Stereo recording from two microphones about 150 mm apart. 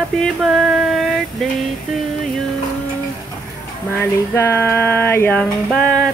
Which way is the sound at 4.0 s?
15° left (ahead or behind).